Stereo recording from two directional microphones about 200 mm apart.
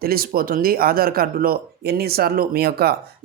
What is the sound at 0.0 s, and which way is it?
Speech, 50° right (ahead or behind).